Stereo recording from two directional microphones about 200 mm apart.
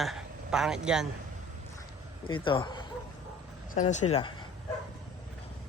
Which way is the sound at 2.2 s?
25° left (ahead or behind).